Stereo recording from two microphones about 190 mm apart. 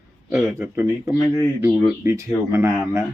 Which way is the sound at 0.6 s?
15° right (ahead or behind).